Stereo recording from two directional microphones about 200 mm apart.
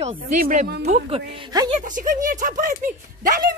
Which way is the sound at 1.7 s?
40° right (ahead or behind).